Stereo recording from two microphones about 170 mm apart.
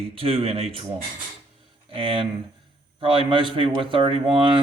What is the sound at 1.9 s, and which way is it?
Speech, 30° right (ahead or behind).